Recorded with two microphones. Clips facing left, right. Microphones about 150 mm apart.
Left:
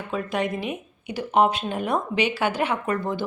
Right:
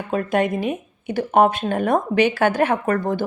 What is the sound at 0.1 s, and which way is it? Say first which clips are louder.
Speech: right 6 dB; 50° right (ahead or behind).